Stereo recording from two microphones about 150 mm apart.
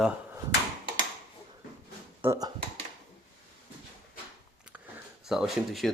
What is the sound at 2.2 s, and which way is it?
Speech, 20° right (ahead or behind).